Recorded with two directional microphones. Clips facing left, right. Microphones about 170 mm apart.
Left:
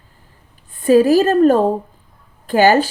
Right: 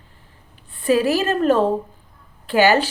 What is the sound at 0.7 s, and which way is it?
A woman's voice, 40° left (ahead or behind).